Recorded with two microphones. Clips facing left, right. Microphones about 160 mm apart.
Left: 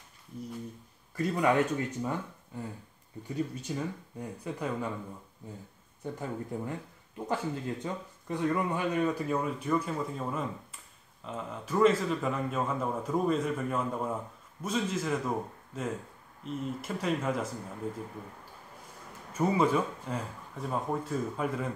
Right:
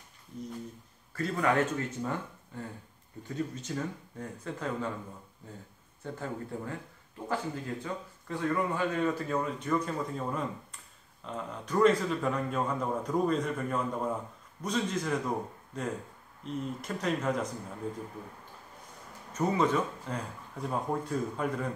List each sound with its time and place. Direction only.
1.1 s speech: 15° left (ahead or behind)
6.1 s speech: 20° left (ahead or behind)
19.3 s speech: 10° left (ahead or behind)